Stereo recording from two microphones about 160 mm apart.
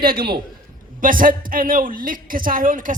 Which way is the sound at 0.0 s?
65° right (ahead or behind).